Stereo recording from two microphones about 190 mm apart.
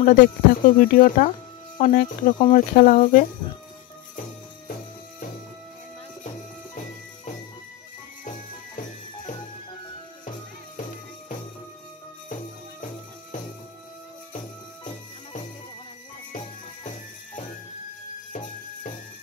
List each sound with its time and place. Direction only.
0.0 s speech: 45° left (ahead or behind)
8.3 s music: 40° left (ahead or behind)
16.8 s music: 40° left (ahead or behind)